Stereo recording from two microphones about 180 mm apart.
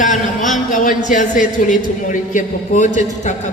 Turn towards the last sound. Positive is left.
turn(degrees=40)  # may be behind; listen again after turning